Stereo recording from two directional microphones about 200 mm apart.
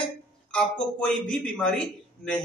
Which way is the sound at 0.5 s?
5° left (ahead or behind).